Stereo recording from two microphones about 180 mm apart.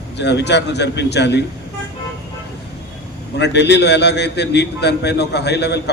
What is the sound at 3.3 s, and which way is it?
A man's voice, 70° left (ahead or behind).